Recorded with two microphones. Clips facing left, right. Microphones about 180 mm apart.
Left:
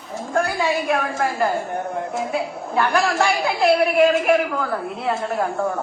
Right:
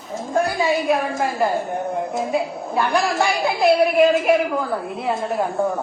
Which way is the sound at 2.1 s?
Centre (ahead or behind).